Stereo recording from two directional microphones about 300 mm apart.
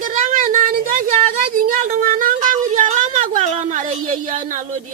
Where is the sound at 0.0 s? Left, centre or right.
Right.